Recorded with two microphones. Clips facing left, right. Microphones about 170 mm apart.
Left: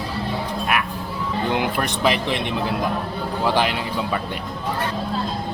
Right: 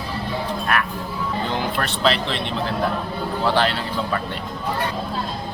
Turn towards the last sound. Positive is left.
turn(degrees=15)  # may be behind; listen again after turning